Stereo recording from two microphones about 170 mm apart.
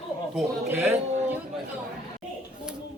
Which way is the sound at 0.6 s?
15° right (ahead or behind).